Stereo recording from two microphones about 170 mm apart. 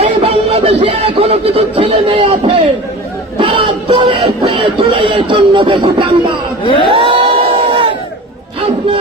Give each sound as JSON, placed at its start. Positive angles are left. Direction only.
{"t": 0.0, "sound": "music", "side_deg": -35}
{"t": 6.7, "sound": "a sound", "side_deg": 30}
{"t": 6.9, "sound": "crowd", "side_deg": -30}